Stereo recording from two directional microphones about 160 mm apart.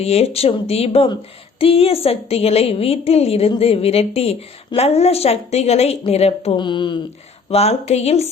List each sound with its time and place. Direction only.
0.0 s a woman's voice: 40° left (ahead or behind)
7.5 s a woman's voice: 40° left (ahead or behind)